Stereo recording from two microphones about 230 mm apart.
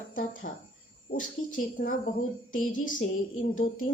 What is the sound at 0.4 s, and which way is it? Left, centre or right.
A woman's voice, left.